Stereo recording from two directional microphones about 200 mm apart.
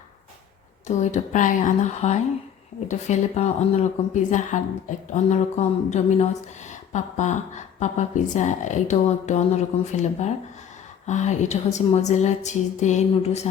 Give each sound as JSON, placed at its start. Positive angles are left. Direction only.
{"t": 0.9, "sound": "a woman's voice", "side_deg": 35}